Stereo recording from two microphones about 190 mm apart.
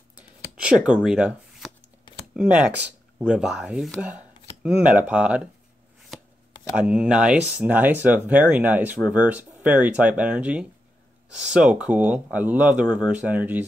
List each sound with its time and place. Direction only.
0.7 s speech: 5° right (ahead or behind)
2.1 s a sound: 25° left (ahead or behind)
3.2 s speech: 5° right (ahead or behind)
6.1 s chopping: centre (ahead or behind)
6.8 s speech: 5° right (ahead or behind)